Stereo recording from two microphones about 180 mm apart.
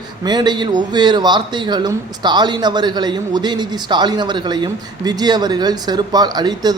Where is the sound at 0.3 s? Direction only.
25° right (ahead or behind).